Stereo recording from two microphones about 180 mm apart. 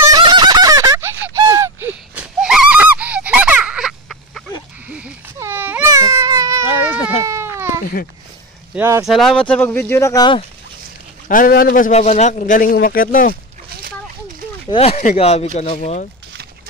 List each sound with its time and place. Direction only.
0.2 s a sound: 25° right (ahead or behind); by 4.4 s centre (ahead or behind)
4.8 s baby cry: 5° right (ahead or behind)
7.8 s a sound: 55° left (ahead or behind)
8.7 s speech: 15° right (ahead or behind)
9.0 s speech: centre (ahead or behind); by 10.4 s 20° left (ahead or behind)
11.2 s a man's voice: 50° left (ahead or behind)
14.7 s speech: 35° left (ahead or behind)